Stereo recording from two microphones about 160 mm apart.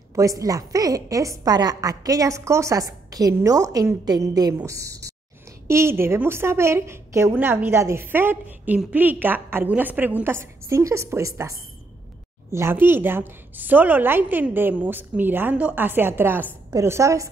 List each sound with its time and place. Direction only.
0.1 s a woman's voice: 20° right (ahead or behind)